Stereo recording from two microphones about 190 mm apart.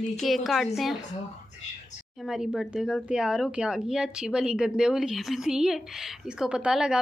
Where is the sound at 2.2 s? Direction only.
Centre (ahead or behind).